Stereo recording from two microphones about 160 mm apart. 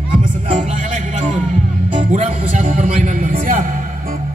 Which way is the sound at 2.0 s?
50° right (ahead or behind).